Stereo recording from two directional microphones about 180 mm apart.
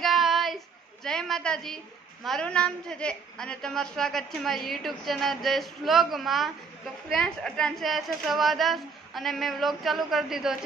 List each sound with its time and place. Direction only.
0.0 s child singing: centre (ahead or behind)
1.0 s a woman's voice: 5° left (ahead or behind)